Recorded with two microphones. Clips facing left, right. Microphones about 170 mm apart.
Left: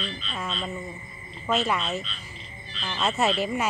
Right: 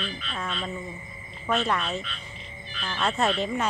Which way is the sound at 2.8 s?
5° left (ahead or behind).